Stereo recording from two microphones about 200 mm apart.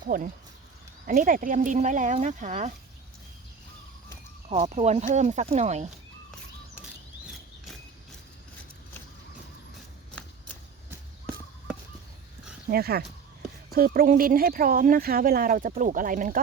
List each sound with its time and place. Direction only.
0.1 s speech: 45° right (ahead or behind)
4.4 s speech: 35° right (ahead or behind)
12.7 s speech: 50° right (ahead or behind)